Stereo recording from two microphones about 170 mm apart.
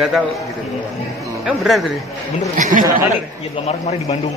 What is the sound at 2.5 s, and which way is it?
Speech, 50° right (ahead or behind).